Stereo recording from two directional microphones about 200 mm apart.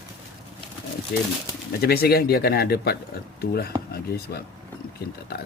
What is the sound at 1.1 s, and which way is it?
Speech, 50° left (ahead or behind).